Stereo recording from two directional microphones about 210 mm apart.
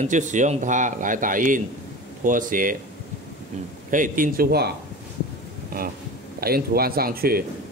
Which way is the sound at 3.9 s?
40° right (ahead or behind).